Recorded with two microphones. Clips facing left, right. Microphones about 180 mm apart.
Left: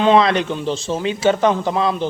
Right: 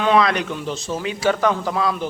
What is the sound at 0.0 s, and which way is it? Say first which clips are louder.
A man's voice: left 4 dB; 25° left (ahead or behind).